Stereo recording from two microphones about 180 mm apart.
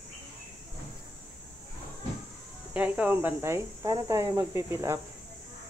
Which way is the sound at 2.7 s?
10° right (ahead or behind).